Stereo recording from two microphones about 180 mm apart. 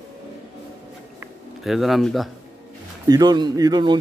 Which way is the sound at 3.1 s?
20° right (ahead or behind).